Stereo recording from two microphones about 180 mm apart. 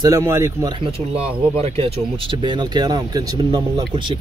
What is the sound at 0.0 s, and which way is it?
Speech, 15° right (ahead or behind).